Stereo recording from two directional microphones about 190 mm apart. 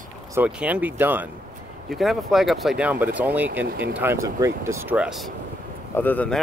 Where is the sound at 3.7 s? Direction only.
55° right (ahead or behind).